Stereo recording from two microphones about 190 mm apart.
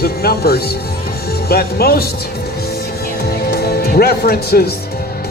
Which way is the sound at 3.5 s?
55° left (ahead or behind).